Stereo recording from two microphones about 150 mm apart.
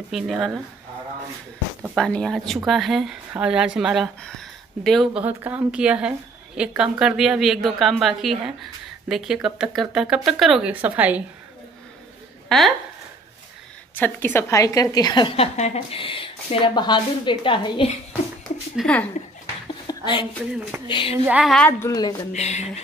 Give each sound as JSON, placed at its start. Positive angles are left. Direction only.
{"t": 0.1, "sound": "a woman's voice", "side_deg": 0}
{"t": 2.0, "sound": "a woman's voice", "side_deg": 5}
{"t": 5.2, "sound": "a woman's voice", "side_deg": -10}
{"t": 12.4, "sound": "speech", "side_deg": 0}
{"t": 13.9, "sound": "a woman's voice", "side_deg": 15}
{"t": 18.8, "sound": "a woman's voice", "side_deg": 10}
{"t": 19.9, "sound": "a woman's voice", "side_deg": 35}
{"t": 21.3, "sound": "a woman's voice", "side_deg": -5}
{"t": 21.5, "sound": "a woman's voice", "side_deg": 10}
{"t": 22.3, "sound": "speech", "side_deg": 50}